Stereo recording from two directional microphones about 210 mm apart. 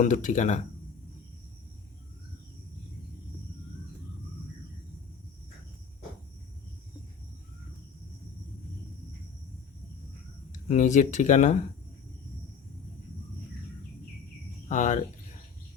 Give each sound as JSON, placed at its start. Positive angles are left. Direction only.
{"t": 0.0, "sound": "speech", "side_deg": 35}
{"t": 10.7, "sound": "speech", "side_deg": 35}
{"t": 14.7, "sound": "speech", "side_deg": 35}